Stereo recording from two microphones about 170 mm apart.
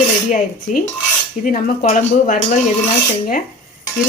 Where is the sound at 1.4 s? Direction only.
55° left (ahead or behind).